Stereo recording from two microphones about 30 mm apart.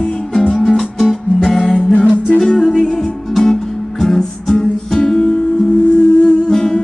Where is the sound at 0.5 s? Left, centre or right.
Centre.